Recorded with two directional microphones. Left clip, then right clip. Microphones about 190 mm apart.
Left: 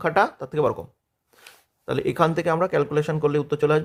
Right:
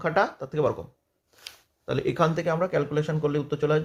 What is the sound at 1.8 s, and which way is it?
Speech, 30° left (ahead or behind).